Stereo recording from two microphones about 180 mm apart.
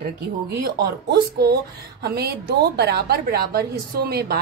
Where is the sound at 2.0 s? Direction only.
65° right (ahead or behind).